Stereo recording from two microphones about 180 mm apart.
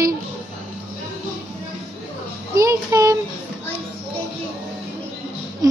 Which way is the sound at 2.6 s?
20° right (ahead or behind).